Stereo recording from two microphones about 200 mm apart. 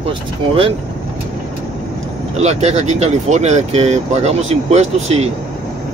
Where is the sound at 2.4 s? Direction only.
35° right (ahead or behind).